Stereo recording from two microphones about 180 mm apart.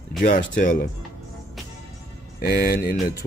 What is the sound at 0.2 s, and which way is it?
Speech, 45° left (ahead or behind).